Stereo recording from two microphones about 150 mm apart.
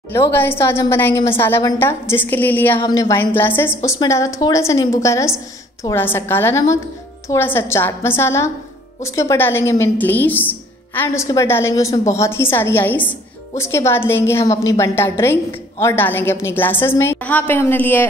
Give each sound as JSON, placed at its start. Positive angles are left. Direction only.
{"t": 0.1, "sound": "a woman's voice", "side_deg": 15}